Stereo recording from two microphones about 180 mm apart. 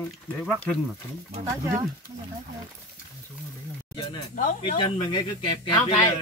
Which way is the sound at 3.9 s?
25° left (ahead or behind).